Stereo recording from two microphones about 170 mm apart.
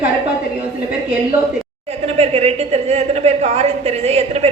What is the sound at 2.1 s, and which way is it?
A woman's voice, 40° right (ahead or behind).